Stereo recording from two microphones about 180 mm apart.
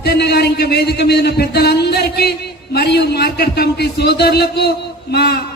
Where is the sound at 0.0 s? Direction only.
65° left (ahead or behind).